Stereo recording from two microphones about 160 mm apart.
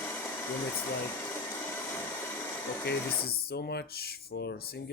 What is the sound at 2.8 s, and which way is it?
Speech, 75° left (ahead or behind).